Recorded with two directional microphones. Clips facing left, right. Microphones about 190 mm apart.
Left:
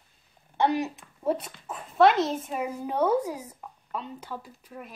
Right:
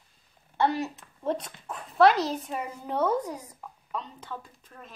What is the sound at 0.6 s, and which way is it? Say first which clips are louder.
A woman's voice: left 1 dB; 15° left (ahead or behind).